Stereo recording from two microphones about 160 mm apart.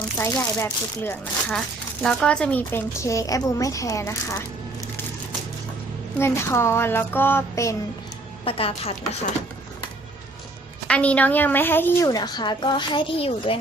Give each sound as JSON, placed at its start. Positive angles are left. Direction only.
{"t": 0.2, "sound": "a woman's voice", "side_deg": 15}
{"t": 6.1, "sound": "speech", "side_deg": 15}
{"t": 8.4, "sound": "speech", "side_deg": 35}
{"t": 10.8, "sound": "speech", "side_deg": 10}
{"t": 12.0, "sound": "a woman's voice", "side_deg": 25}